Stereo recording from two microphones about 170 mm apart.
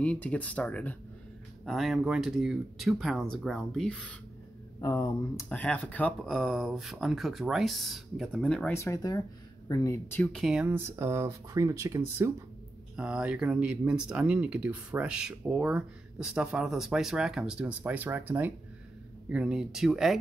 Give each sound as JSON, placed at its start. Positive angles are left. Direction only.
{"t": 0.0, "sound": "speech", "side_deg": 5}
{"t": 4.7, "sound": "speech", "side_deg": 20}
{"t": 8.7, "sound": "speech", "side_deg": 20}
{"t": 10.3, "sound": "speech", "side_deg": -5}